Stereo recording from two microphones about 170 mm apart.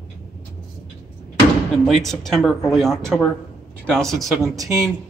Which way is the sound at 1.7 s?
Centre (ahead or behind).